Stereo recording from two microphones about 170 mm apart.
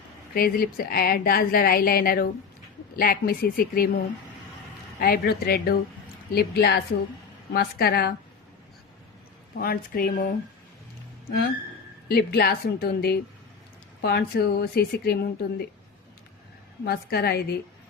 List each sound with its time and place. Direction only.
0.3 s a woman's voice: 60° left (ahead or behind)
9.6 s a woman's voice: 60° left (ahead or behind)
12.0 s a woman's voice: 70° left (ahead or behind)
16.8 s a woman's voice: 65° left (ahead or behind)